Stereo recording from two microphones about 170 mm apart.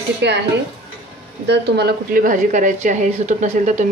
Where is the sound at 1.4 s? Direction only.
80° right.